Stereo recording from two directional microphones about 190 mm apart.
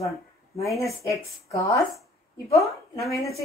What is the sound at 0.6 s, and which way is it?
Speech, 15° left (ahead or behind).